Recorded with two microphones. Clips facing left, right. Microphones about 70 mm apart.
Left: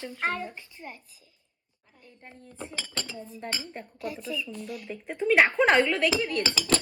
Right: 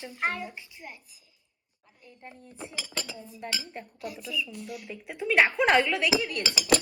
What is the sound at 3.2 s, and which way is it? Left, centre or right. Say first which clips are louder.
Speech: left 1 dB; left.